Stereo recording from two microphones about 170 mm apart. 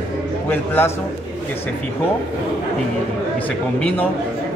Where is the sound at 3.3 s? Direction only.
10° left (ahead or behind).